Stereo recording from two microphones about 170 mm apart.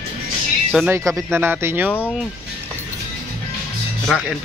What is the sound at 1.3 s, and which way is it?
Speech, 10° right (ahead or behind).